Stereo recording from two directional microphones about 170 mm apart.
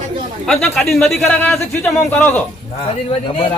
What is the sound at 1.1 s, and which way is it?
A man's voice, 15° left (ahead or behind).